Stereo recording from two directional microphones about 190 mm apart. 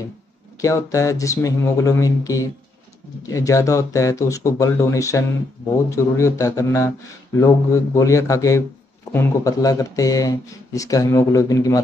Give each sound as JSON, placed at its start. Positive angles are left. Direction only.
{"t": 0.6, "sound": "speech", "side_deg": 15}